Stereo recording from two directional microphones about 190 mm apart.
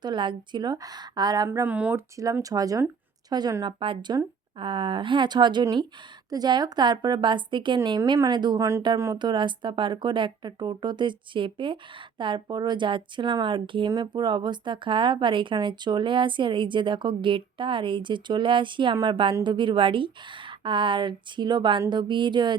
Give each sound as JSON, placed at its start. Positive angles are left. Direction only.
{"t": 0.0, "sound": "a woman's voice", "side_deg": -25}